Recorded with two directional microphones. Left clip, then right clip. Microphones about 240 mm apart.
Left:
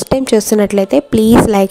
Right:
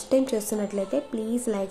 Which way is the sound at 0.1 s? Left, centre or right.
Left.